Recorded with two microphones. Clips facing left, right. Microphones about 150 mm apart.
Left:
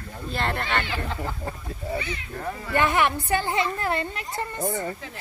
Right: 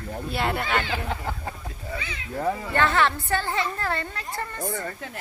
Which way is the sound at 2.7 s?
15° left (ahead or behind).